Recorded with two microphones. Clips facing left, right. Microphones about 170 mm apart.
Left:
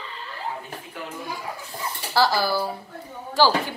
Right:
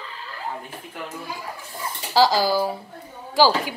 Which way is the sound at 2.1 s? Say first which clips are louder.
Right 3 dB; 15° right (ahead or behind).